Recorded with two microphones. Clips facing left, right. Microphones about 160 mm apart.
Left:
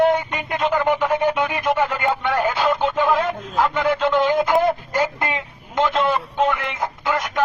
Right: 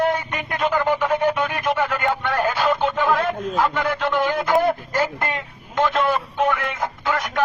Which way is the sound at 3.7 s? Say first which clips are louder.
Left 3 dB; 20° left (ahead or behind).